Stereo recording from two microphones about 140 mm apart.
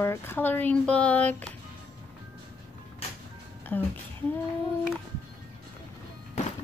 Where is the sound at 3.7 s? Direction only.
10° left (ahead or behind).